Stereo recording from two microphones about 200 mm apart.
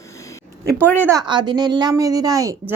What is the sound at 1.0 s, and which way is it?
A woman's voice, 20° right (ahead or behind).